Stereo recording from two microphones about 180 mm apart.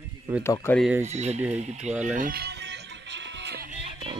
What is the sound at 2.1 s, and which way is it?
Speech, 55° right (ahead or behind).